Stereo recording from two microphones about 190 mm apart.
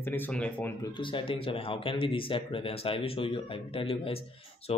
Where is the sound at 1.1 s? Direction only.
30° left (ahead or behind).